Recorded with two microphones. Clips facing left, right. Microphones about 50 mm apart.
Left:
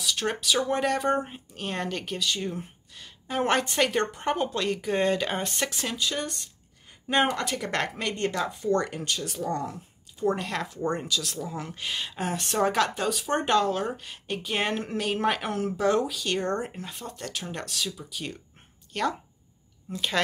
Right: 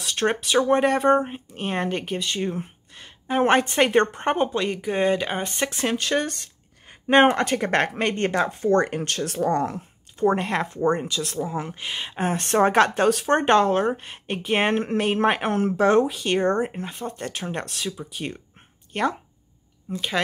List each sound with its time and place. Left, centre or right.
0.0 s speech: right
4.5 s speech: centre
5.7 s speech: right
5.9 s speech: right
6.9 s speech: right
10.2 s speech: right
19.9 s speech: right